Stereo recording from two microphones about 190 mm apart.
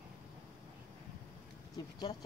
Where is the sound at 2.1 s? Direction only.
20° left (ahead or behind).